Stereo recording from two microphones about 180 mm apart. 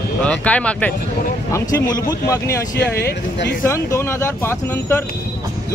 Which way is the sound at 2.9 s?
65° left (ahead or behind).